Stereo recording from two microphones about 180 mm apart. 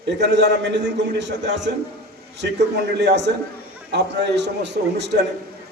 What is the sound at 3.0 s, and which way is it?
A man's voice, 70° right (ahead or behind).